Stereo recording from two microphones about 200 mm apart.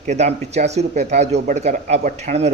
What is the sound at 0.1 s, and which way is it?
Speech, 35° right (ahead or behind).